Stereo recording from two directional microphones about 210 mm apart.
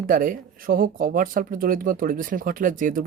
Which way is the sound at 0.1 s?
40° right (ahead or behind).